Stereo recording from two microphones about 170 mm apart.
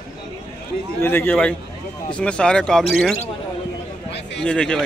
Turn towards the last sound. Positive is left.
turn(degrees=5)  # may be behind; listen again after turning